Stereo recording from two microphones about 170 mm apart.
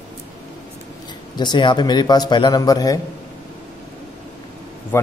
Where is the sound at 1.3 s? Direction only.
25° left (ahead or behind).